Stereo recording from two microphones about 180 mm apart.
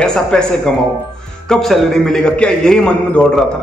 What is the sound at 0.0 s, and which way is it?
A man's voice, 5° left (ahead or behind).